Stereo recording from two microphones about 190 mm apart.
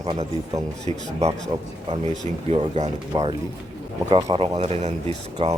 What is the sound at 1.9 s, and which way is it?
A man's voice, 35° right (ahead or behind).